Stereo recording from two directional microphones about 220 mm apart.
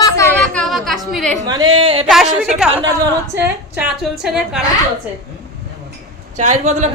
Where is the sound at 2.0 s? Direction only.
Centre (ahead or behind).